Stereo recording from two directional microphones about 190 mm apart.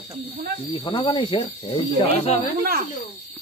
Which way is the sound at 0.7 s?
30° left (ahead or behind).